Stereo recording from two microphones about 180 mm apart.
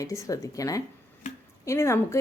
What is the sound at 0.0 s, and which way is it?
A woman's voice, 20° left (ahead or behind).